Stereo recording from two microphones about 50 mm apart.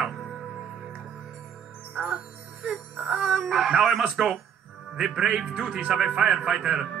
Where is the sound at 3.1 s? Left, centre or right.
Centre.